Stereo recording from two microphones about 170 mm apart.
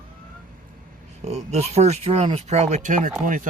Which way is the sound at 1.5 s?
40° right (ahead or behind).